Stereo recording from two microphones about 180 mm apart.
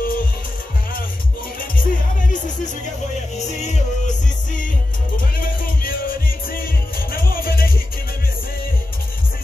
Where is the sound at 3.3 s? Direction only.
40° left (ahead or behind).